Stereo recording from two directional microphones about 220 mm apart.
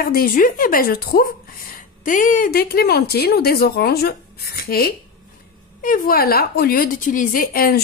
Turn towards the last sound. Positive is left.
turn(degrees=40)  # may be behind; listen again after turning